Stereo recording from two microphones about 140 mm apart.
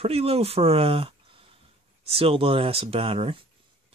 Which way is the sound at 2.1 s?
40° right (ahead or behind).